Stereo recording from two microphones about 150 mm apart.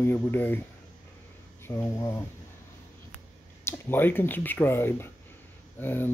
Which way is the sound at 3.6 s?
15° left (ahead or behind).